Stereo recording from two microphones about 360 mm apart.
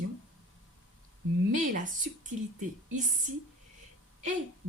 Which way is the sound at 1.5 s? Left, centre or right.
Right.